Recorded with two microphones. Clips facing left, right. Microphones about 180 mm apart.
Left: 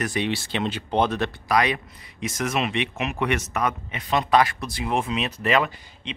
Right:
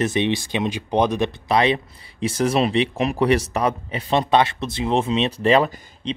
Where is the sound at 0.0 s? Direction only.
20° right (ahead or behind).